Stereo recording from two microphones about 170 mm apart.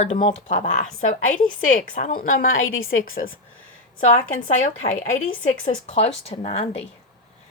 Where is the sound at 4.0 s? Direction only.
45° left (ahead or behind).